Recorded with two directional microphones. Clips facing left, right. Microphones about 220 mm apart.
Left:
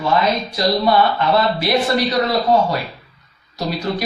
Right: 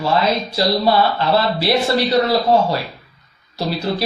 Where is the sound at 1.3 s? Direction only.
30° right (ahead or behind).